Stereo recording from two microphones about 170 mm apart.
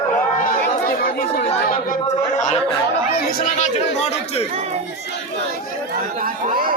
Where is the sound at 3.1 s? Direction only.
60° left (ahead or behind); by 4.5 s 35° left (ahead or behind).